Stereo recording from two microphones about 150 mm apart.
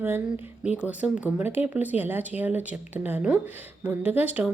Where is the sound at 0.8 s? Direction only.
10° right (ahead or behind).